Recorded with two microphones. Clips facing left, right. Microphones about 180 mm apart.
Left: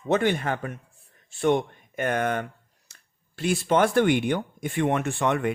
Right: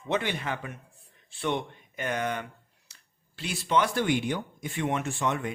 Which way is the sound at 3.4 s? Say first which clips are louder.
Left 5 dB; 50° left (ahead or behind).